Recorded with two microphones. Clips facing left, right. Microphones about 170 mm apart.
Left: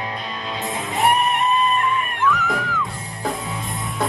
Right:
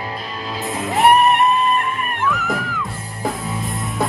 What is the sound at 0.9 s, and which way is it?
Music, 60° right (ahead or behind).